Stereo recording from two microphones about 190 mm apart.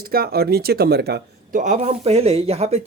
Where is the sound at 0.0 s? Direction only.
50° right (ahead or behind).